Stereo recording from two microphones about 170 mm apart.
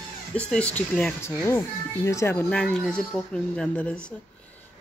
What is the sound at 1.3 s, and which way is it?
Speech, 20° left (ahead or behind).